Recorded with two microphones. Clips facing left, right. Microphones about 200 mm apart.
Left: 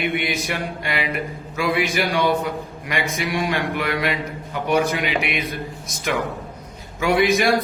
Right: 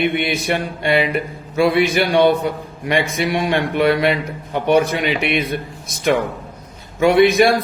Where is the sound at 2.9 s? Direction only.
25° right (ahead or behind).